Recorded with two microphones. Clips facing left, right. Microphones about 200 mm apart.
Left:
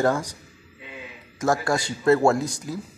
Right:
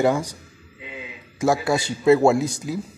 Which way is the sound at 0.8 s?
20° right (ahead or behind).